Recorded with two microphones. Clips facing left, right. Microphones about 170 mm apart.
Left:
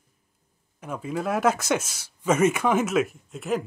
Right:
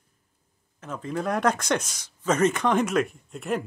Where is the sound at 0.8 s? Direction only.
10° left (ahead or behind).